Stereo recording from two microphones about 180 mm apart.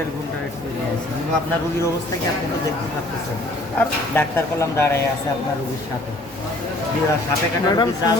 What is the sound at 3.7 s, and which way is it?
Speech, 10° left (ahead or behind).